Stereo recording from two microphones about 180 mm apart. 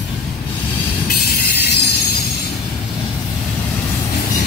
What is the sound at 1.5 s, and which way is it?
Train wheels squealing, 65° left (ahead or behind).